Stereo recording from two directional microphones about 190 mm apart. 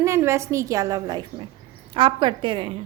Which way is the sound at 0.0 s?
15° right (ahead or behind).